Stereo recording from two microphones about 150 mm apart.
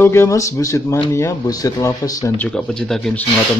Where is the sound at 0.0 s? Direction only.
15° left (ahead or behind).